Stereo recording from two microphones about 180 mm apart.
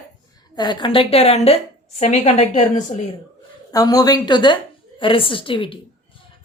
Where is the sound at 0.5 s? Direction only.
25° left (ahead or behind); by 3.0 s 40° left (ahead or behind).